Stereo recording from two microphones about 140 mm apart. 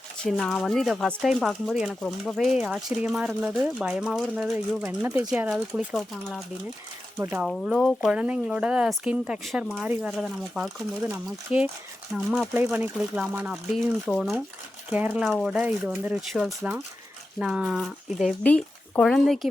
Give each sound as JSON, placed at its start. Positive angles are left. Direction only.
{"t": 0.2, "sound": "speech", "side_deg": 5}
{"t": 2.3, "sound": "speech", "side_deg": -5}
{"t": 7.2, "sound": "speech", "side_deg": -20}
{"t": 7.4, "sound": "speech", "side_deg": 0}
{"t": 13.7, "sound": "speech", "side_deg": 0}
{"t": 14.8, "sound": "speech", "side_deg": -10}
{"t": 15.3, "sound": "speech", "side_deg": 0}
{"t": 15.6, "sound": "speech", "side_deg": -10}
{"t": 16.3, "sound": "speech", "side_deg": 0}
{"t": 18.4, "sound": "speech", "side_deg": 10}